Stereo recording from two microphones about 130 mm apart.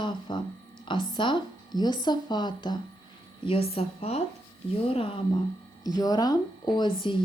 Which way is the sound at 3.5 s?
50° left (ahead or behind).